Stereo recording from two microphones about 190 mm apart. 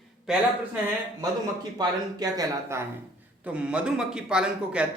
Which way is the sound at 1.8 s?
20° right (ahead or behind).